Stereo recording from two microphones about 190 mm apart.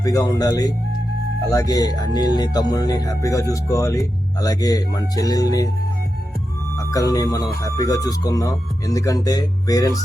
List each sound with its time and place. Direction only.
0.0 s speech: 15° left (ahead or behind)
6.9 s speech: 20° left (ahead or behind)